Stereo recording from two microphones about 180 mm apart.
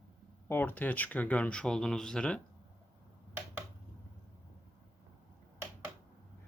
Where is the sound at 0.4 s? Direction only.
10° left (ahead or behind).